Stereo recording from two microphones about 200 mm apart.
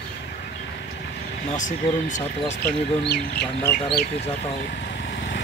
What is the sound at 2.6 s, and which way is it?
Speech, 55° left (ahead or behind).